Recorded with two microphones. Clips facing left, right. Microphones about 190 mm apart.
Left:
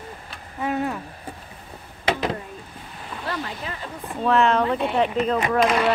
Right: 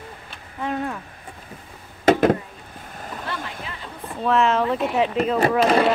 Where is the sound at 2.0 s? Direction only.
50° right (ahead or behind).